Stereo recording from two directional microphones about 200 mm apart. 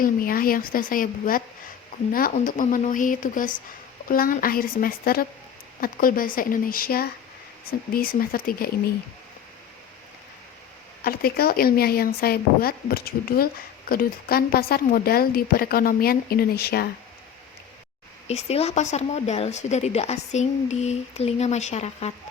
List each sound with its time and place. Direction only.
0.0 s a woman's voice: 45° left (ahead or behind)
11.0 s a woman's voice: 50° left (ahead or behind)
18.3 s speech: 30° left (ahead or behind)